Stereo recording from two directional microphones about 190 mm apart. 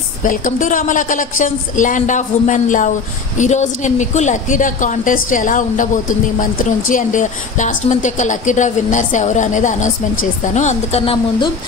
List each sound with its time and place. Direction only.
0.2 s a woman's voice: 45° left (ahead or behind); by 11.5 s 25° left (ahead or behind)